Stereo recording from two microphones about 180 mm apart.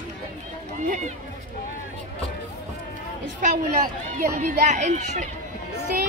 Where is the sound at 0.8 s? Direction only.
45° right (ahead or behind).